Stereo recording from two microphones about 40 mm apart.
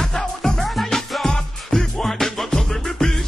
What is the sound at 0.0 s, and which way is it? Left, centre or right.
Music, centre.